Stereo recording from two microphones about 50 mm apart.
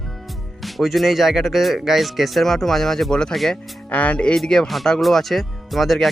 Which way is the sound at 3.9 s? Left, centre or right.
Left.